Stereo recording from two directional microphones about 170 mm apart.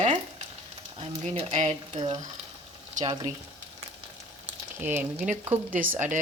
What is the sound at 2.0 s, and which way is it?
Speech, 25° right (ahead or behind).